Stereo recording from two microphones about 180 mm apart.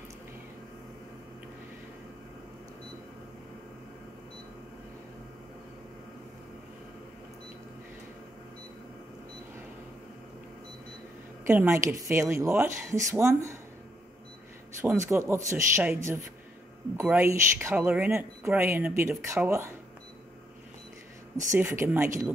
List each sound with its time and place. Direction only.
11.4 s speech: 15° right (ahead or behind)
14.8 s speech: 15° right (ahead or behind)
21.5 s speech: 15° right (ahead or behind)